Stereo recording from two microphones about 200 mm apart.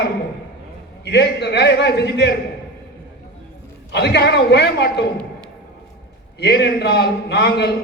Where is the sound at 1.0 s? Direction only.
55° left (ahead or behind).